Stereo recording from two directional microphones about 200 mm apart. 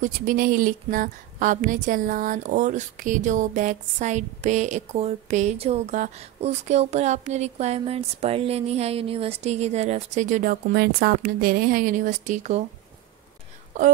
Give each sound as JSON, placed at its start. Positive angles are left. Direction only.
{"t": 0.0, "sound": "a woman's voice", "side_deg": -45}